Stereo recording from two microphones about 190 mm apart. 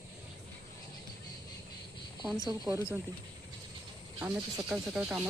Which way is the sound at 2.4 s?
20° right (ahead or behind).